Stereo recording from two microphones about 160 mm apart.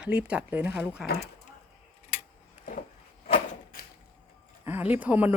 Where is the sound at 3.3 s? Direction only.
65° left (ahead or behind).